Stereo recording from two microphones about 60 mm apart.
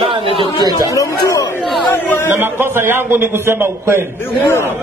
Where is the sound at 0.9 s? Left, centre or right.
Left.